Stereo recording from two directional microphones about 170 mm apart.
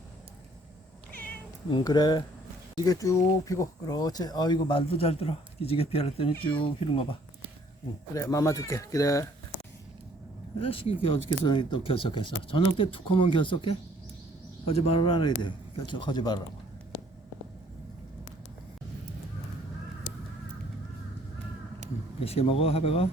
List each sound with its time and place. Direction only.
1.7 s speech: 25° left (ahead or behind)
8.1 s speech: 20° left (ahead or behind)
10.6 s speech: 35° left (ahead or behind)
22.2 s speech: 35° left (ahead or behind)